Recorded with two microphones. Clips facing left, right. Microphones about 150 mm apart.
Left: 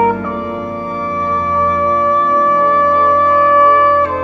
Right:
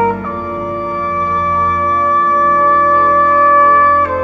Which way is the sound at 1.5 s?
20° left (ahead or behind).